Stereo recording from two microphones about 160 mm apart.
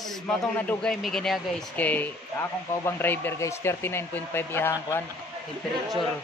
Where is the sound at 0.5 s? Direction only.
5° left (ahead or behind).